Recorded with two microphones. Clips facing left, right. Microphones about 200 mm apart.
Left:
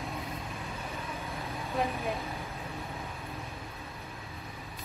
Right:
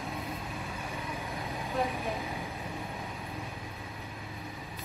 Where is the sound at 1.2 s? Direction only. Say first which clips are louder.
Right 1 dB; 15° right (ahead or behind).